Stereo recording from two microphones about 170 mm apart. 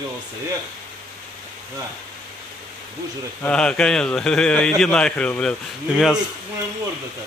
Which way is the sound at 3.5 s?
5° left (ahead or behind).